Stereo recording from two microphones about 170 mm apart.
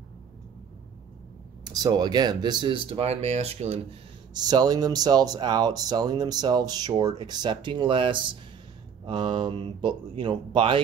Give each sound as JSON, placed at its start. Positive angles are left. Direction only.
{"t": 1.6, "sound": "speech", "side_deg": -25}
{"t": 4.3, "sound": "speech", "side_deg": -25}